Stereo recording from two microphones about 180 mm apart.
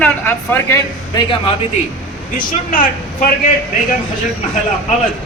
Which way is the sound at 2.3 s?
50° left (ahead or behind).